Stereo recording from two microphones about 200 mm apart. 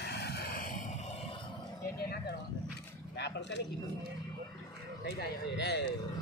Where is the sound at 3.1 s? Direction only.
60° left (ahead or behind).